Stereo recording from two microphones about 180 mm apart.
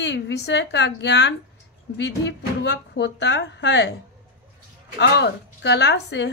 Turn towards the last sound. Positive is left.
turn(degrees=75)  # may be behind; listen again after turning